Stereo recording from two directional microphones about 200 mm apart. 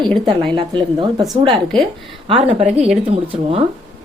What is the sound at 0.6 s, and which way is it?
Speech, 25° right (ahead or behind).